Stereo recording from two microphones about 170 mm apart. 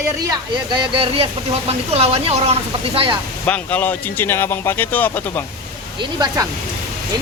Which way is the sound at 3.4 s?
10° left (ahead or behind).